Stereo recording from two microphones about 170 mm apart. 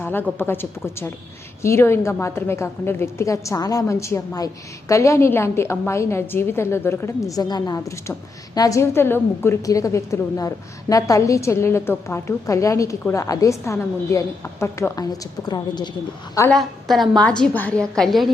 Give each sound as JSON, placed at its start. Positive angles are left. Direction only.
{"t": 0.0, "sound": "a sound", "side_deg": 10}
{"t": 0.3, "sound": "a woman's voice", "side_deg": 15}
{"t": 16.5, "sound": "a woman's voice", "side_deg": 0}